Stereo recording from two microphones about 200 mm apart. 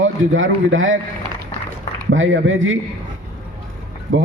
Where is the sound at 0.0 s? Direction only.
75° right (ahead or behind).